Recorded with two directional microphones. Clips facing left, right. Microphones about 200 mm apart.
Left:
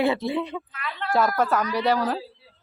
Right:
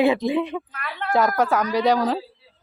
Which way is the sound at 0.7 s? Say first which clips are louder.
Right 1 dB; 40° right (ahead or behind).